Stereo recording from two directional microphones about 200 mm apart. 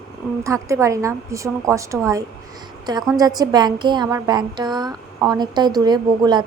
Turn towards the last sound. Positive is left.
turn(degrees=-20)  # may be behind; listen again after turning